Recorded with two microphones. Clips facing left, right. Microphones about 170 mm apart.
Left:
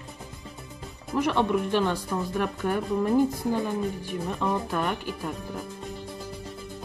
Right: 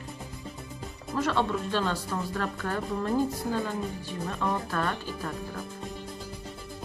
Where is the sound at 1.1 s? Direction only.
15° left (ahead or behind).